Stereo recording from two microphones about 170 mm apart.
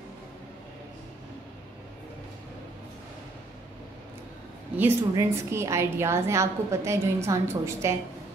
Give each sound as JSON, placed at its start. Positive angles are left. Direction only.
{"t": 4.7, "sound": "a woman's voice", "side_deg": -15}